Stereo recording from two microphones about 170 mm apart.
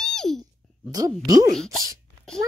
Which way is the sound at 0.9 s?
20° right (ahead or behind).